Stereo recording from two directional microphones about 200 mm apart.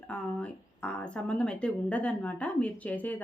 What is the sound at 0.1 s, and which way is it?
Speech, 5° left (ahead or behind).